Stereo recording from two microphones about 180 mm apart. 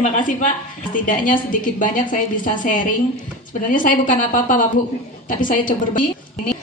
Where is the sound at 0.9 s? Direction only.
45° left (ahead or behind).